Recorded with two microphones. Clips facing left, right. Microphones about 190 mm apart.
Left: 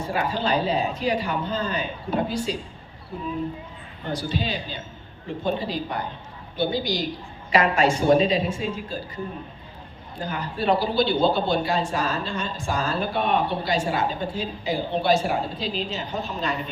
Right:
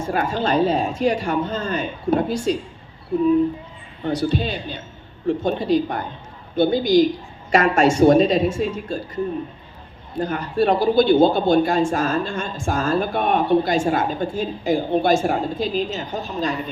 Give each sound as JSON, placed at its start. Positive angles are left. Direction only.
{"t": 0.0, "sound": "speech", "side_deg": -45}
{"t": 4.1, "sound": "speech", "side_deg": -60}
{"t": 5.4, "sound": "speech", "side_deg": -45}
{"t": 10.2, "sound": "speech", "side_deg": -45}